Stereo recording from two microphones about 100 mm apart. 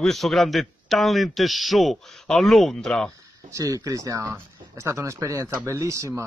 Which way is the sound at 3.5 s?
35° right (ahead or behind).